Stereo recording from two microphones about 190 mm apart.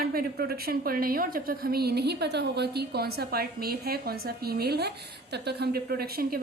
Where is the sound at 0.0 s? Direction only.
50° right (ahead or behind).